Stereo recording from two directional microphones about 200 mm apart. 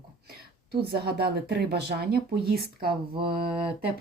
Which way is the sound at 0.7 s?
50° right (ahead or behind).